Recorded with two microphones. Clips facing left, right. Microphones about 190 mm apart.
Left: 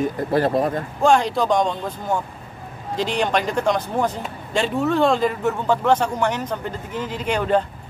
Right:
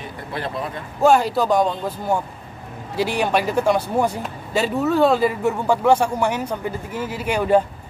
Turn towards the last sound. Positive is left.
turn(degrees=-10)  # may be behind; listen again after turning